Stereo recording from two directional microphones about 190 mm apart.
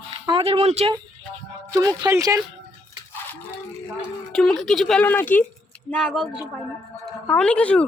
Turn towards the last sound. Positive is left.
turn(degrees=5)  # may be behind; listen again after turning